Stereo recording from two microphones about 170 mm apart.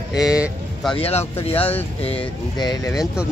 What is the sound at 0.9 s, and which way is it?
Speech, 35° left (ahead or behind).